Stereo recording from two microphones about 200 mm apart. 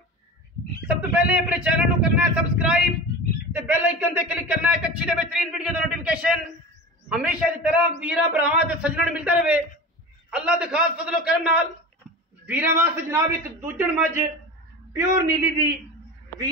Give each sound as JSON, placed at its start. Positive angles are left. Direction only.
{"t": 0.8, "sound": "a man's voice", "side_deg": -5}